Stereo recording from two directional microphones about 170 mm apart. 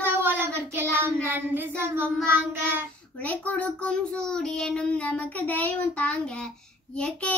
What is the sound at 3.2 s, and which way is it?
A child's voice, 10° left (ahead or behind).